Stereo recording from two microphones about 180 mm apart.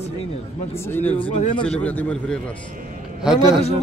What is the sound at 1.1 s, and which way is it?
Speech, 30° left (ahead or behind).